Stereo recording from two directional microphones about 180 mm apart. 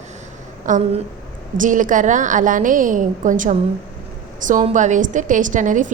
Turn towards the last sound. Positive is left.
turn(degrees=-45)  # may be behind; listen again after turning